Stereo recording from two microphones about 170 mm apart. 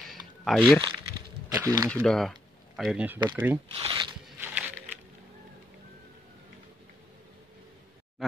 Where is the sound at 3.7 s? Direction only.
35° right (ahead or behind).